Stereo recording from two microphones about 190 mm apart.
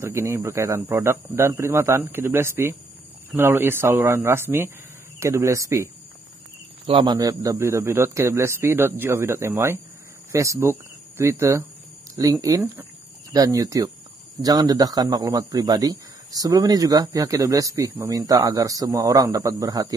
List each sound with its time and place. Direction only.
0.0 s a man's voice: 15° right (ahead or behind)
6.9 s a man's voice: 25° right (ahead or behind)